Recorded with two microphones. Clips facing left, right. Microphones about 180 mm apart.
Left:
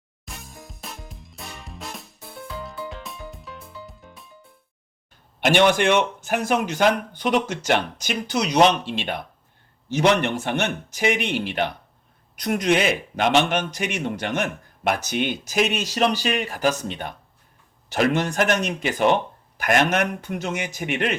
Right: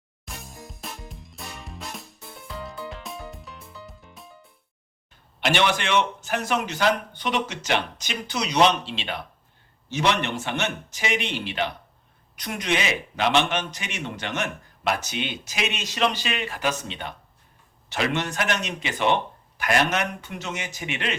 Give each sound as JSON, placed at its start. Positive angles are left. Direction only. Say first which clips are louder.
{"t": 0.3, "sound": "music", "louder": "even", "side_deg": 0}
{"t": 5.4, "sound": "a man's voice", "louder": "left 6 dB", "side_deg": 50}